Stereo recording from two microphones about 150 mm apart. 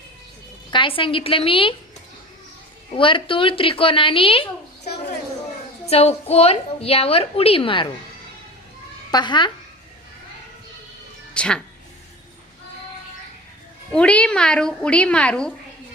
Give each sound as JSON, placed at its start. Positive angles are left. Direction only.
{"t": 0.7, "sound": "a woman's voice", "side_deg": 35}
{"t": 2.9, "sound": "a woman's voice", "side_deg": 35}
{"t": 9.1, "sound": "a woman's voice", "side_deg": 30}
{"t": 11.3, "sound": "speech", "side_deg": 5}
{"t": 13.9, "sound": "speech", "side_deg": 5}